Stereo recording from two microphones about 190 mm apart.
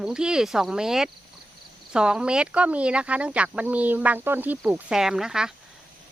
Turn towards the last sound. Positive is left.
turn(degrees=-5)  # may be behind; listen again after turning